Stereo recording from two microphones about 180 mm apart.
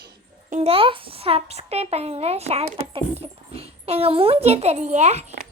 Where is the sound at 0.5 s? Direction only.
35° right (ahead or behind).